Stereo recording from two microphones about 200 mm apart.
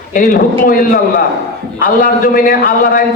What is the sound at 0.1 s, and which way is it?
Speech, 45° left (ahead or behind).